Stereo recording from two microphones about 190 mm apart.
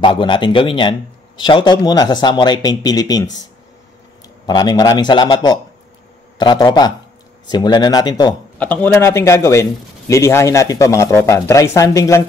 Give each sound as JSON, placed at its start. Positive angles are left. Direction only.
{"t": 0.0, "sound": "speech", "side_deg": 25}
{"t": 4.5, "sound": "speech", "side_deg": 20}
{"t": 8.5, "sound": "speech", "side_deg": 10}